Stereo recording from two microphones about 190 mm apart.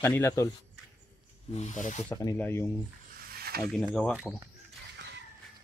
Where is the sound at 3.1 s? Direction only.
55° right (ahead or behind).